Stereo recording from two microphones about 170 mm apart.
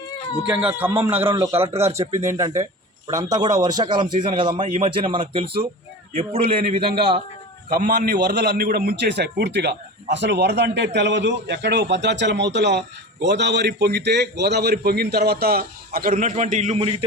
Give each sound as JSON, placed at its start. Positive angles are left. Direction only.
{"t": 0.4, "sound": "speech", "side_deg": -10}
{"t": 4.6, "sound": "a man's voice", "side_deg": -50}
{"t": 5.1, "sound": "a man's voice", "side_deg": -30}
{"t": 7.7, "sound": "a man's voice", "side_deg": -60}